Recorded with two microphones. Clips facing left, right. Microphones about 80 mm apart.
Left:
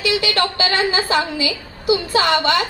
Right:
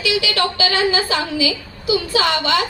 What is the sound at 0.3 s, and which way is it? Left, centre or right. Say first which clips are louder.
A woman's voice: even; left.